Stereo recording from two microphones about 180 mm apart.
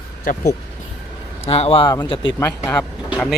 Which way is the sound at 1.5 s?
35° left (ahead or behind).